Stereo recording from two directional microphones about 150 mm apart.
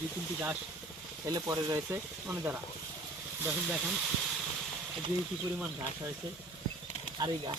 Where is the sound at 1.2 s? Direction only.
25° right (ahead or behind).